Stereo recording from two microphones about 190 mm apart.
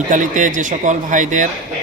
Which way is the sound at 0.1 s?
40° right (ahead or behind).